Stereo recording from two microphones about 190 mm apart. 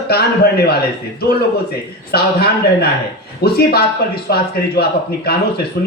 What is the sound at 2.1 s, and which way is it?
Speech, 55° left (ahead or behind).